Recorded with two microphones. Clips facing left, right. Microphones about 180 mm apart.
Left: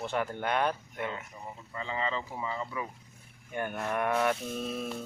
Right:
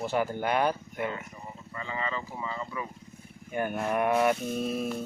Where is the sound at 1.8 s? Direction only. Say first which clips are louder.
Left 1 dB; 20° left (ahead or behind).